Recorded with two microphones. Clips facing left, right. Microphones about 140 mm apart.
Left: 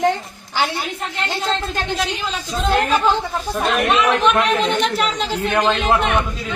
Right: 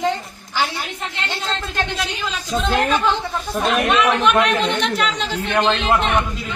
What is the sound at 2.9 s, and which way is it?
Speech, 40° left (ahead or behind).